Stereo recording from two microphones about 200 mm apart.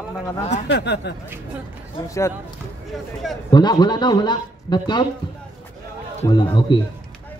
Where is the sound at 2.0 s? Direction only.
15° left (ahead or behind).